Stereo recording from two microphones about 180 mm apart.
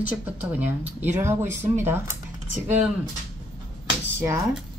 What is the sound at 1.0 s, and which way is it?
Speech, 15° right (ahead or behind).